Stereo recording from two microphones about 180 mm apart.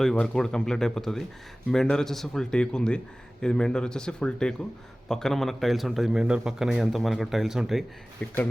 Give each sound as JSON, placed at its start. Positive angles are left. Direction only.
{"t": 0.0, "sound": "a man's voice", "side_deg": 5}